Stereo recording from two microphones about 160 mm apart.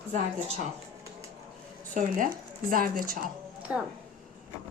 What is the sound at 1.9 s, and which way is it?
A woman's voice, 55° right (ahead or behind).